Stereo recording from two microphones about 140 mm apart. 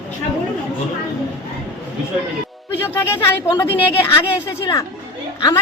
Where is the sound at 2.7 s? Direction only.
15° left (ahead or behind).